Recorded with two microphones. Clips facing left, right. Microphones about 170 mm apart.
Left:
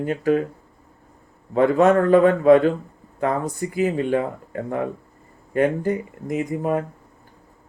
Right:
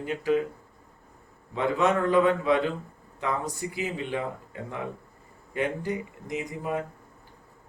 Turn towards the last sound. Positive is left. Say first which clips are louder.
# left 8 dB
turn(degrees=45)  # may be behind; listen again after turning